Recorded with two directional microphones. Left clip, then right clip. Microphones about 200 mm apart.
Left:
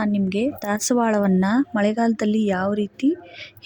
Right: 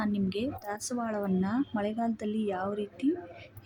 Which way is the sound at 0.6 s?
40° left (ahead or behind).